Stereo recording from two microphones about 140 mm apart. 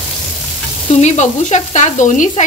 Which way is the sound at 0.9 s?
55° left (ahead or behind).